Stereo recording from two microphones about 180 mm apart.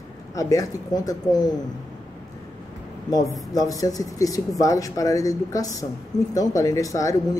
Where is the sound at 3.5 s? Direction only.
20° left (ahead or behind).